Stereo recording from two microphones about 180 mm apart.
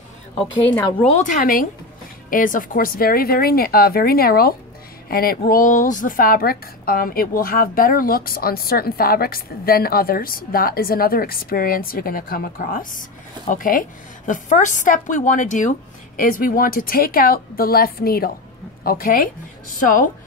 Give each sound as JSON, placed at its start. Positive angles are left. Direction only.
{"t": 0.7, "sound": "speech", "side_deg": 15}
{"t": 1.0, "sound": "a woman's voice", "side_deg": 45}